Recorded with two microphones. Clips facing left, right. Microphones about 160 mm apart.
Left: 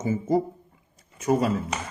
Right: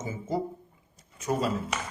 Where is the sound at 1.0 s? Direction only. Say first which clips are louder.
Left 6 dB; 60° left (ahead or behind).